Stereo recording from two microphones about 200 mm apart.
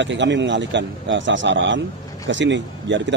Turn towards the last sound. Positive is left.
turn(degrees=-65)  # may be behind; listen again after turning